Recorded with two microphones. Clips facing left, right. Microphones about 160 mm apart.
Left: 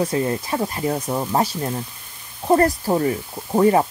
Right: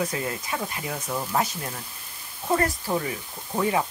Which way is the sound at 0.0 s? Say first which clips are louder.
Left 7 dB; 30° left (ahead or behind).